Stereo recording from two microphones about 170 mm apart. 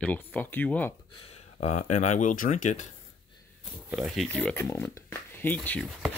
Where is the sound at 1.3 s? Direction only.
45° left (ahead or behind).